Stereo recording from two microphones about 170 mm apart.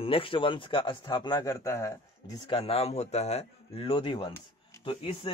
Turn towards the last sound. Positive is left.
turn(degrees=30)  # may be behind; listen again after turning